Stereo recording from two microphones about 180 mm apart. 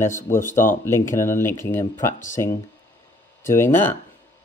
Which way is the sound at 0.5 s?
45° left (ahead or behind).